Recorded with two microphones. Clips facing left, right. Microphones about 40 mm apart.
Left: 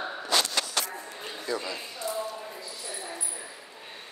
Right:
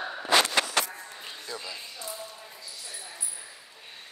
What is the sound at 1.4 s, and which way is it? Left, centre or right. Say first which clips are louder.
Speech: left 8 dB; centre.